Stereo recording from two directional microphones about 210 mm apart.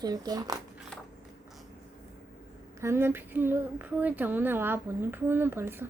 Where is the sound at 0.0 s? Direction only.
20° right (ahead or behind).